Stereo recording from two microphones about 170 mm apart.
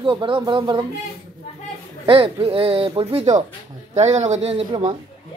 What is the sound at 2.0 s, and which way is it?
Speech, 30° right (ahead or behind).